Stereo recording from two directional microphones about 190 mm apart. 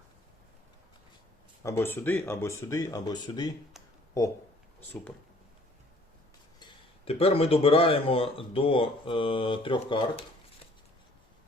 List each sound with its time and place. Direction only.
1.6 s speech: 15° left (ahead or behind)
6.6 s speech: 30° left (ahead or behind)